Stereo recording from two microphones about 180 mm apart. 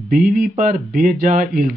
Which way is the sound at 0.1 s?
50° right (ahead or behind).